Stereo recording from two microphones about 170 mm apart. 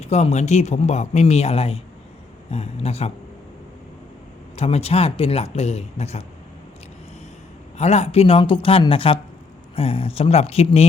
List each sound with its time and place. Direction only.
0.0 s speech: 40° left (ahead or behind)
4.5 s speech: 40° left (ahead or behind)
7.8 s speech: 40° left (ahead or behind)